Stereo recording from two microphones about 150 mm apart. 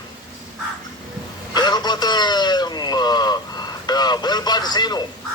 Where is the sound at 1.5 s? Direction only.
30° left (ahead or behind).